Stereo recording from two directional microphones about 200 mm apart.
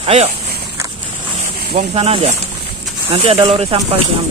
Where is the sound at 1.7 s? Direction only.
30° right (ahead or behind).